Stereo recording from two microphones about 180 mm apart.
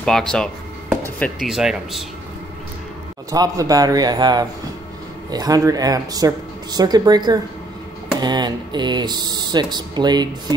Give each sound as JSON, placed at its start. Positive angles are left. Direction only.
{"t": 0.0, "sound": "speech", "side_deg": 5}
{"t": 3.3, "sound": "speech", "side_deg": -20}